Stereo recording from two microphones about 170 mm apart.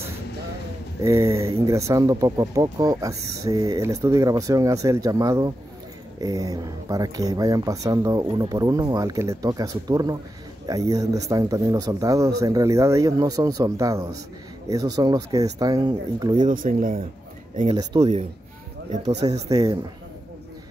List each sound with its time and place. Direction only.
1.0 s speech: 15° right (ahead or behind)
16.3 s speech: 50° right (ahead or behind)
17.6 s speech: 25° right (ahead or behind)
19.2 s speech: 20° right (ahead or behind)